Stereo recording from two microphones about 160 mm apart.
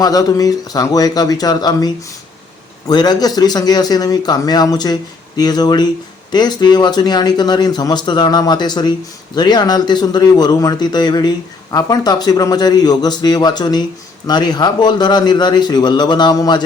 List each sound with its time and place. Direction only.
0.0 s speech: 25° left (ahead or behind)